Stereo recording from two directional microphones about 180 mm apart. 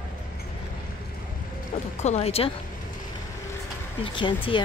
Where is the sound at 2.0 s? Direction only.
35° left (ahead or behind).